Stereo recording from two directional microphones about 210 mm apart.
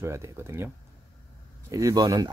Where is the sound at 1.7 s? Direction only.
15° right (ahead or behind).